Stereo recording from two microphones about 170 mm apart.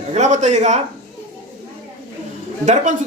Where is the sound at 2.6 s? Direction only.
45° right (ahead or behind).